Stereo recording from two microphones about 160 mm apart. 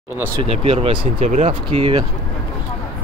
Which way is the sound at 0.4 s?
40° right (ahead or behind).